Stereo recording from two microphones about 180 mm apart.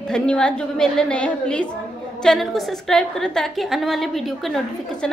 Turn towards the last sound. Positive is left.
turn(degrees=0)  # may be behind; listen again after turning